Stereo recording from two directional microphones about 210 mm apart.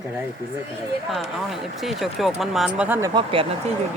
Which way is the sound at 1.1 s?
Centre (ahead or behind).